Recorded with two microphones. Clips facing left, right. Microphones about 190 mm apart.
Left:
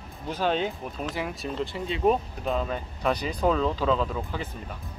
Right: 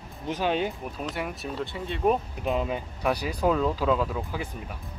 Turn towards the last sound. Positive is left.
turn(degrees=-10)  # may be behind; listen again after turning